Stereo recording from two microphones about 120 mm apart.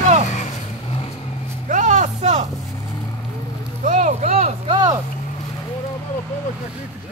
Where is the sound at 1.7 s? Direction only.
90° right; by 2.4 s 75° right (ahead or behind).